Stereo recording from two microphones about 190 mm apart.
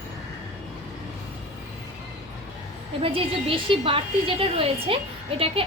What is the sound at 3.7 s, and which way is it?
A woman's voice, 30° right (ahead or behind).